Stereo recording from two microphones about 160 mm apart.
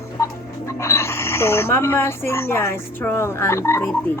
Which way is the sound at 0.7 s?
15° left (ahead or behind).